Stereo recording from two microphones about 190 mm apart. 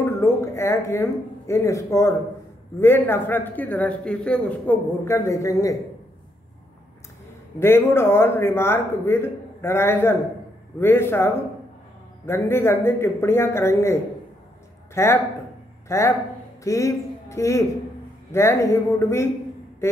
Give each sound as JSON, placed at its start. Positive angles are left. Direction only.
{"t": 0.0, "sound": "a sound", "side_deg": 15}
{"t": 1.5, "sound": "a man's voice", "side_deg": 15}
{"t": 7.5, "sound": "a man's voice", "side_deg": 10}
{"t": 15.0, "sound": "a man's voice", "side_deg": 15}